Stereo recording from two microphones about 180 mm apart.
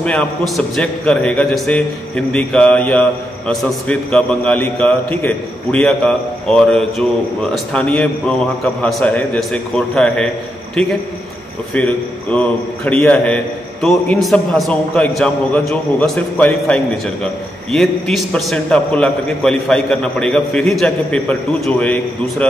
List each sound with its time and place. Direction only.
0.0 s a man's voice: 5° left (ahead or behind)